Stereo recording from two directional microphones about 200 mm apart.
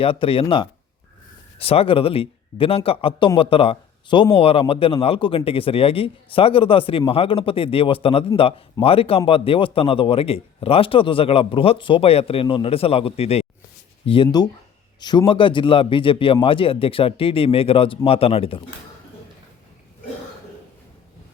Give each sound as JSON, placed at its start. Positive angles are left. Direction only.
{"t": 0.0, "sound": "speech", "side_deg": 25}